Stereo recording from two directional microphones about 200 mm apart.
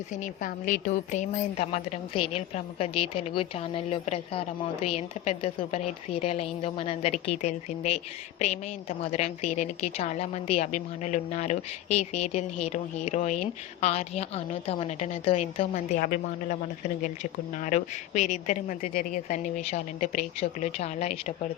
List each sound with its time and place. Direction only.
0.1 s a woman's voice: 40° left (ahead or behind)
17.6 s a woman's voice: 40° left (ahead or behind)